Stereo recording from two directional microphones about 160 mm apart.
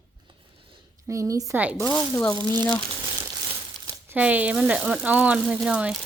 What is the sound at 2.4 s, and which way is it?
Speech, 25° right (ahead or behind).